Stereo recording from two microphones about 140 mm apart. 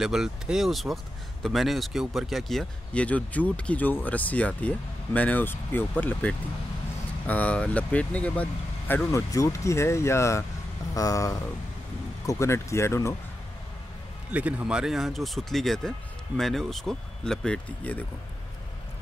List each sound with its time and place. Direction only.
0.0 s speech: 5° right (ahead or behind); by 13.1 s 20° left (ahead or behind)
14.3 s speech: 10° right (ahead or behind); by 18.0 s 10° left (ahead or behind)